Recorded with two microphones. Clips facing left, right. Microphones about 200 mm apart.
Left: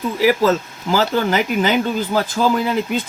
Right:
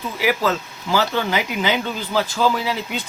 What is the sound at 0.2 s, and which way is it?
Speech, 40° left (ahead or behind).